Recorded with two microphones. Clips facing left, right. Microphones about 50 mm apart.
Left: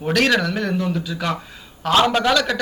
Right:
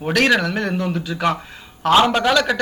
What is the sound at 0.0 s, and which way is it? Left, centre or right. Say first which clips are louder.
A man's voice: right 1 dB; centre.